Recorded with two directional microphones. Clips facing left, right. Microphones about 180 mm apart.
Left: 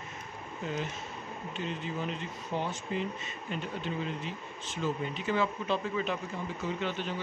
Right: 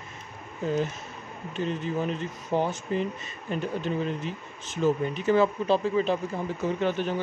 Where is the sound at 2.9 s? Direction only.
40° right (ahead or behind).